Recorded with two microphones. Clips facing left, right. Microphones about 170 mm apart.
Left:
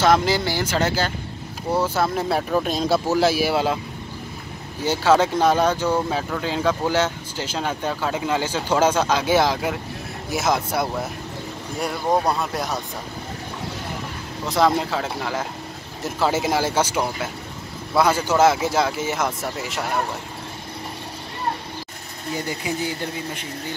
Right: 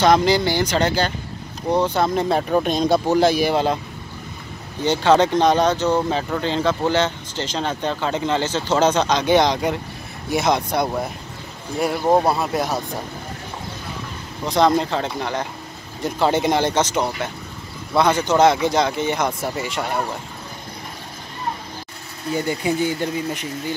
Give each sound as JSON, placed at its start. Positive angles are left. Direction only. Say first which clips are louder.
{"t": 0.0, "sound": "speech", "louder": "right 3 dB", "side_deg": 5}
{"t": 4.8, "sound": "speech", "louder": "right 2 dB", "side_deg": 5}
{"t": 12.3, "sound": "speech", "louder": "right 3 dB", "side_deg": 0}
{"t": 14.4, "sound": "speech", "louder": "right 2 dB", "side_deg": 5}
{"t": 22.7, "sound": "speech", "louder": "right 6 dB", "side_deg": -30}